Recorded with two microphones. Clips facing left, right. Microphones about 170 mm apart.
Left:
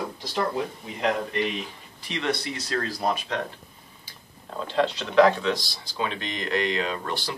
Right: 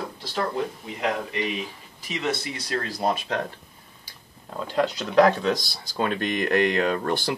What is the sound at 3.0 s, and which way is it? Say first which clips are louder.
Speech: right 3 dB; 40° right (ahead or behind).